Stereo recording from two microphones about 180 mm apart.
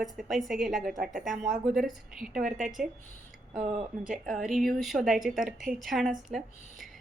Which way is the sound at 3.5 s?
45° right (ahead or behind).